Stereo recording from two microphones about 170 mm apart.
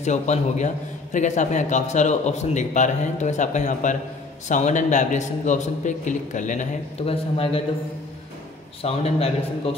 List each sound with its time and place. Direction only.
0.0 s a man's voice: 45° left (ahead or behind)
8.8 s a man's voice: 35° left (ahead or behind)